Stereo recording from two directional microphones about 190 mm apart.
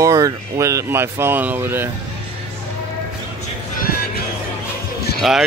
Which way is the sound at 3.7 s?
50° left (ahead or behind).